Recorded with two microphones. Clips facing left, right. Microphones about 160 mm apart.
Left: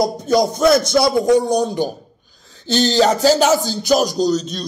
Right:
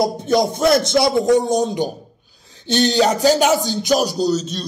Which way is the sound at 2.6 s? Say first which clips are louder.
Left 1 dB; 15° right (ahead or behind).